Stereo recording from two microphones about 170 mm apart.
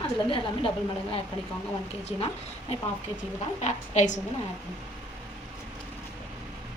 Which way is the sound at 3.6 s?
45° left (ahead or behind).